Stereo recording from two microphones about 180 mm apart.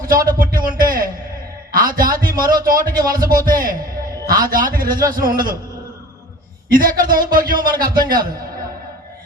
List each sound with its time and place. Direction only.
0.1 s a sound: 50° right (ahead or behind)
1.7 s a man's voice: 50° right (ahead or behind)
6.7 s a man's voice: 50° right (ahead or behind)